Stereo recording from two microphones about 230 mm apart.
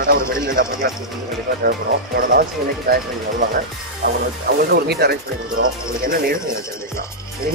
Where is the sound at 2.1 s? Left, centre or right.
Right.